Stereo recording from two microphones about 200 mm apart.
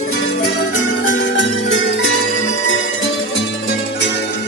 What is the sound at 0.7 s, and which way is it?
Music, 80° left.